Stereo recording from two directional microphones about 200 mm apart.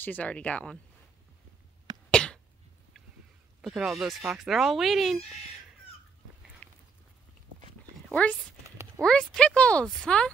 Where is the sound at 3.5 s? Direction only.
Centre (ahead or behind).